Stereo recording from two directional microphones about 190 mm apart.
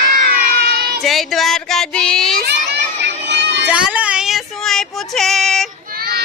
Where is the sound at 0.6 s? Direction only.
55° right (ahead or behind).